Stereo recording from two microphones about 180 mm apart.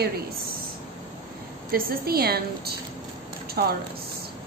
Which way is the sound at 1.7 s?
55° right (ahead or behind).